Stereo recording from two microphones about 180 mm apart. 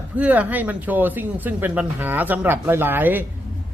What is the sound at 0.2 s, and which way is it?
Speech, 10° right (ahead or behind).